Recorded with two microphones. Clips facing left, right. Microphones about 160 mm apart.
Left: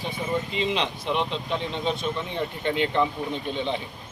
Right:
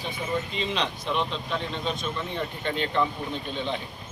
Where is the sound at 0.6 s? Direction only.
20° left (ahead or behind).